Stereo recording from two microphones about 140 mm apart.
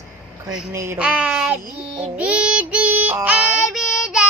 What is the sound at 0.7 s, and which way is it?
Speech, 20° right (ahead or behind).